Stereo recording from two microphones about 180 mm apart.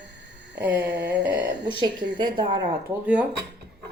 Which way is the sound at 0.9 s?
70° right (ahead or behind).